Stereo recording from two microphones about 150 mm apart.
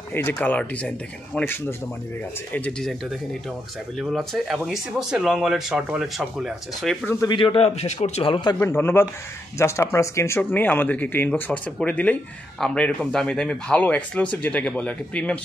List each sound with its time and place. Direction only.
0.1 s speech: 10° left (ahead or behind)
4.0 s speech: centre (ahead or behind)
7.1 s speech: 20° left (ahead or behind)
7.3 s a man's voice: 35° left (ahead or behind)
8.5 s speech: 15° left (ahead or behind)